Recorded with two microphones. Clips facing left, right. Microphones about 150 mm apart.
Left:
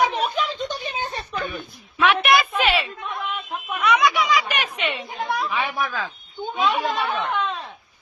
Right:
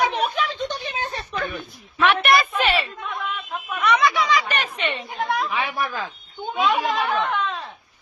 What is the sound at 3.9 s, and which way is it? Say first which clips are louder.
A woman's voice: even; 15° left (ahead or behind).